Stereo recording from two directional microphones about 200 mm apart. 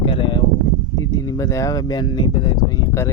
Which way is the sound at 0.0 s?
25° left (ahead or behind).